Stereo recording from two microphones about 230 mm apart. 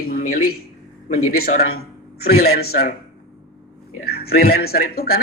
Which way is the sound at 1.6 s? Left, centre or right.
Left.